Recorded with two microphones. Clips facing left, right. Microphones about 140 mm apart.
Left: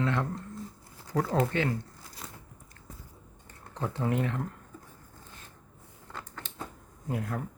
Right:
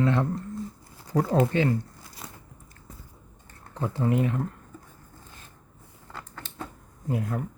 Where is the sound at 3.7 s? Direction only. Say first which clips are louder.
Right 4 dB; 5° right (ahead or behind).